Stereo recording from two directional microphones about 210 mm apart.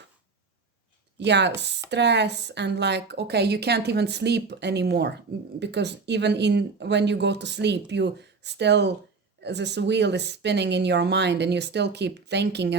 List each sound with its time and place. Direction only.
1.2 s speech: 55° right (ahead or behind)